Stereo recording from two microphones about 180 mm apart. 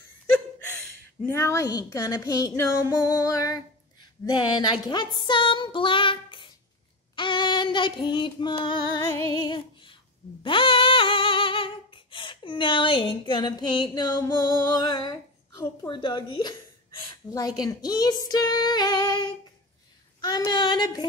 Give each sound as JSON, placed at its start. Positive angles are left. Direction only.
{"t": 1.3, "sound": "speech", "side_deg": 15}
{"t": 3.1, "sound": "music", "side_deg": 20}
{"t": 4.0, "sound": "speech", "side_deg": 25}
{"t": 4.8, "sound": "child singing", "side_deg": 25}
{"t": 10.4, "sound": "a sound", "side_deg": 30}
{"t": 17.3, "sound": "speech", "side_deg": 20}